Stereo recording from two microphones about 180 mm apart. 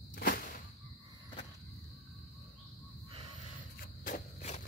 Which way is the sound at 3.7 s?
45° left (ahead or behind).